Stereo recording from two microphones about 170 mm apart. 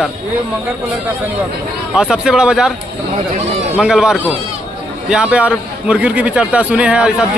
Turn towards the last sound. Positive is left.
turn(degrees=-5)  # may be behind; listen again after turning